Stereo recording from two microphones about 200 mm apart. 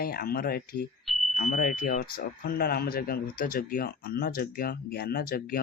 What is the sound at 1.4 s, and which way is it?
Speech, 45° left (ahead or behind).